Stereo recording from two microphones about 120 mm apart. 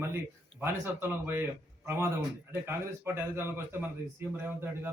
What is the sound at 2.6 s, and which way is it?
A man's voice, 20° right (ahead or behind).